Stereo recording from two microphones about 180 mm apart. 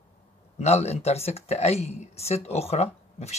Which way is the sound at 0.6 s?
35° left (ahead or behind).